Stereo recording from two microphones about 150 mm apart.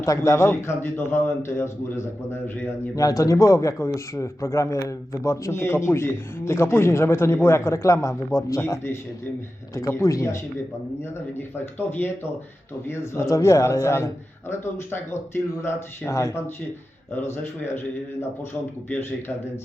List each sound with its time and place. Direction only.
0.0 s speech: 20° left (ahead or behind)